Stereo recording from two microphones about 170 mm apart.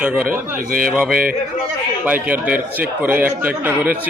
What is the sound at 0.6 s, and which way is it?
Speech, 55° right (ahead or behind).